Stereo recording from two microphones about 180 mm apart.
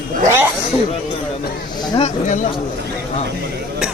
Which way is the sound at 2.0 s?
45° left (ahead or behind).